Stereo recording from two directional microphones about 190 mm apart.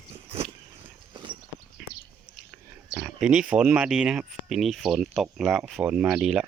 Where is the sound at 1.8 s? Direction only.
Centre (ahead or behind).